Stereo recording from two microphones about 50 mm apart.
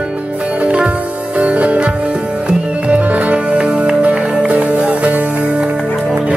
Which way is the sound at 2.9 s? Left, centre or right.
Right.